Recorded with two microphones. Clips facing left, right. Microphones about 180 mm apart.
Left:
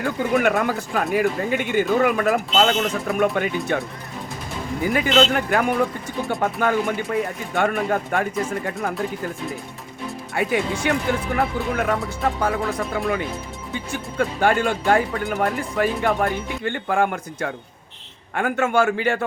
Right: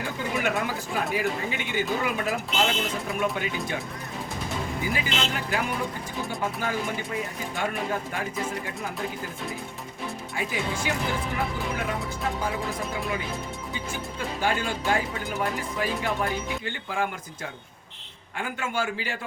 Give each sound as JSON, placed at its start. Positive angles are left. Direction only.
{"t": 0.0, "sound": "speech", "side_deg": 55}
{"t": 4.8, "sound": "speech", "side_deg": 55}
{"t": 10.3, "sound": "speech", "side_deg": 60}
{"t": 14.2, "sound": "speech", "side_deg": 55}